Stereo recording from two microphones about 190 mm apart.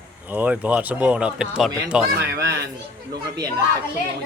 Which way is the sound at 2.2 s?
60° right (ahead or behind).